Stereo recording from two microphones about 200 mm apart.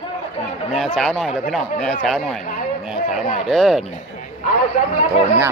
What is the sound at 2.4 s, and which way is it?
Speech, 40° left (ahead or behind).